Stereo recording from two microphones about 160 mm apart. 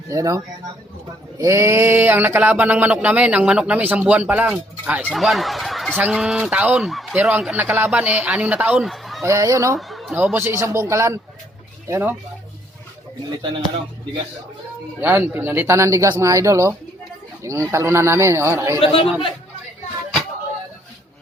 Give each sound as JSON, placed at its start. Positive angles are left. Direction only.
{"t": 0.1, "sound": "speech", "side_deg": -20}
{"t": 9.2, "sound": "speech", "side_deg": -20}
{"t": 9.7, "sound": "speech", "side_deg": 0}
{"t": 15.0, "sound": "speech", "side_deg": -15}
{"t": 18.8, "sound": "speech", "side_deg": 35}